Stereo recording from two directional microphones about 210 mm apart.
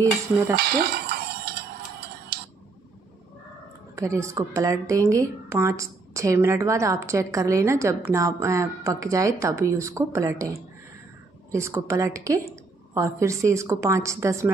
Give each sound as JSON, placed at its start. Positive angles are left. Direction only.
{"t": 0.6, "sound": "dishes", "side_deg": -50}
{"t": 2.3, "sound": "tick", "side_deg": -50}
{"t": 3.9, "sound": "a woman's voice", "side_deg": -15}
{"t": 11.5, "sound": "a woman's voice", "side_deg": -15}